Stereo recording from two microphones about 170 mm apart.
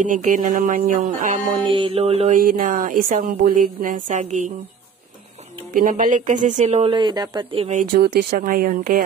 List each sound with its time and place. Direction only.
0.0 s speech: 50° right (ahead or behind)
1.7 s music: 30° right (ahead or behind)
2.3 s speech: 55° right (ahead or behind)
5.7 s speech: 55° right (ahead or behind); by 7.8 s 35° right (ahead or behind)
7.9 s speech: 65° right (ahead or behind)